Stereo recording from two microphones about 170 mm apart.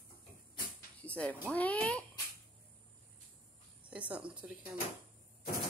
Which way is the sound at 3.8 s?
5° right (ahead or behind).